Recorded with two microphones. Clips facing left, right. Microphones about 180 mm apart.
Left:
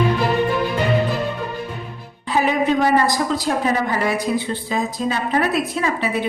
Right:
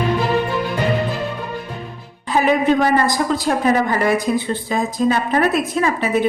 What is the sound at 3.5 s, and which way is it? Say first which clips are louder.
A woman's voice: right 5 dB; 55° right (ahead or behind).